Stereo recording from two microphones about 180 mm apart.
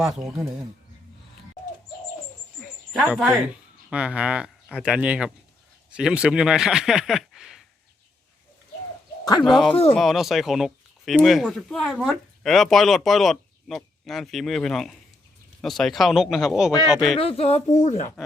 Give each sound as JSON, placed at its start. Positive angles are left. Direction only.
{"t": 0.0, "sound": "speech", "side_deg": -5}
{"t": 2.9, "sound": "speech", "side_deg": 0}
{"t": 9.4, "sound": "speech", "side_deg": 0}
{"t": 17.2, "sound": "speech", "side_deg": 30}